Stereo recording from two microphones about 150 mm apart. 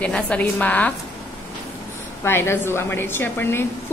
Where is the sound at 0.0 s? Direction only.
10° left (ahead or behind).